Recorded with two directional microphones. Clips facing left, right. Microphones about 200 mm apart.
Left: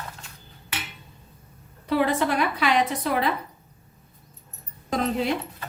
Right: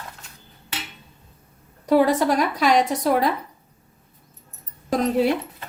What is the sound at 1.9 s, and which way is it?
Speech, 40° right (ahead or behind).